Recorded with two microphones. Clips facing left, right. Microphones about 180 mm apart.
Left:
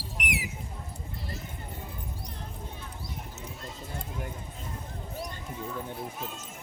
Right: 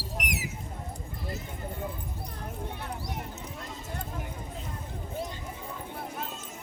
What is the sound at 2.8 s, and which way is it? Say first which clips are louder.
Horse: right 5 dB; 70° right (ahead or behind).